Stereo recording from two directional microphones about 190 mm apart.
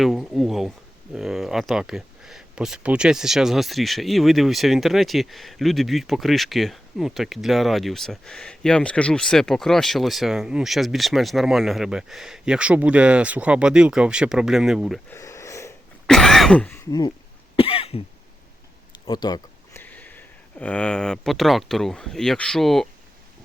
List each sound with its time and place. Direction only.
0.0 s speech: centre (ahead or behind)
15.1 s a sound: 15° left (ahead or behind)
16.0 s speech: centre (ahead or behind)
17.6 s cough: 30° left (ahead or behind)
19.0 s speech: 25° left (ahead or behind)
19.7 s speech: 10° left (ahead or behind)